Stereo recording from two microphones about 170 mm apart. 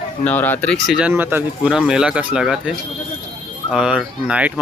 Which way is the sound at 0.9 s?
10° right (ahead or behind).